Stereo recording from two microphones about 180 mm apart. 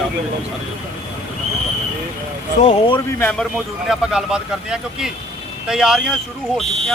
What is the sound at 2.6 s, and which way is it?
Speech, 30° left (ahead or behind).